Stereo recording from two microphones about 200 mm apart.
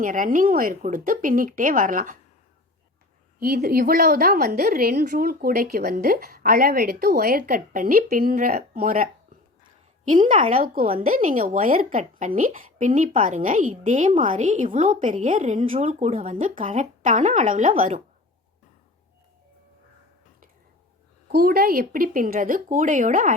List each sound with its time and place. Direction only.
0.0 s a woman's voice: 40° right (ahead or behind)
3.4 s a woman's voice: 50° right (ahead or behind)
11.0 s a woman's voice: 40° right (ahead or behind)
21.2 s a woman's voice: 50° right (ahead or behind)